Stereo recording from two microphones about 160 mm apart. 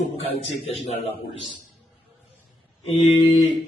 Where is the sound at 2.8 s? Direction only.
35° left (ahead or behind).